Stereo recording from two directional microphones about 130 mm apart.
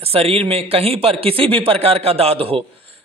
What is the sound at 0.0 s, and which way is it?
Speech, 50° right (ahead or behind).